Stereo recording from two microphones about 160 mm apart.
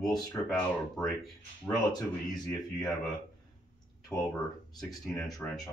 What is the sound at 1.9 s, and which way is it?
Speech, 25° left (ahead or behind).